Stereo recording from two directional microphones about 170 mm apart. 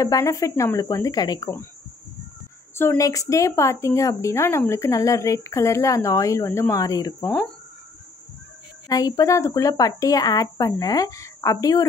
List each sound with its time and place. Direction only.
0.0 s a woman's voice: 20° left (ahead or behind)
2.7 s a woman's voice: 15° left (ahead or behind)
7.2 s a woman's voice: 10° left (ahead or behind)
8.8 s a woman's voice: 20° left (ahead or behind)